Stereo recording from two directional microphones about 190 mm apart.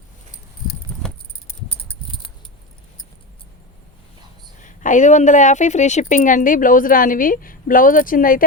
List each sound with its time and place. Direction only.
4.6 s a woman's voice: 40° left (ahead or behind)